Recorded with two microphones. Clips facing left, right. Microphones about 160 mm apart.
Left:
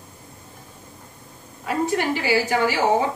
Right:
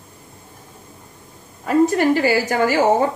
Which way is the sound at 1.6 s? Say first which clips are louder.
Right 7 dB; 45° right (ahead or behind).